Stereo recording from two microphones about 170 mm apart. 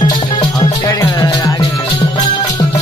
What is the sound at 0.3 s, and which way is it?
Music, 30° left (ahead or behind).